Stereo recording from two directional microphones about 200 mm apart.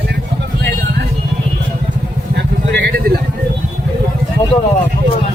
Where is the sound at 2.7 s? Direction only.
50° right (ahead or behind).